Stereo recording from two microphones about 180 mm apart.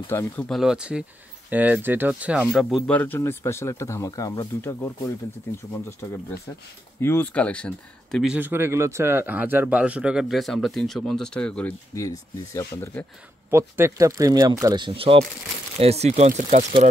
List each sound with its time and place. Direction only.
0.1 s speech: 10° left (ahead or behind)
0.5 s speech: centre (ahead or behind)
2.6 s speech: 10° left (ahead or behind)
11.9 s speech: 20° left (ahead or behind)
13.5 s speech: 15° right (ahead or behind); by 16.6 s 40° right (ahead or behind)